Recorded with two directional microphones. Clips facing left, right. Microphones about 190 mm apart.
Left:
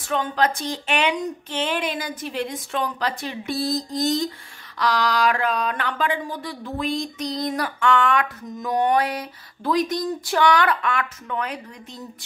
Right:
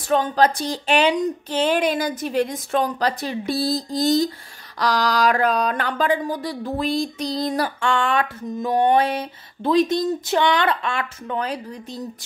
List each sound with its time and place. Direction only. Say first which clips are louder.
0.1 s speech: right 4 dB; 35° right (ahead or behind)